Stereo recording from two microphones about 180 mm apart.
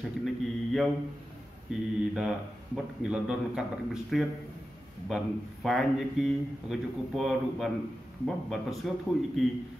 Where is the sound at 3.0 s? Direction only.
5° right (ahead or behind).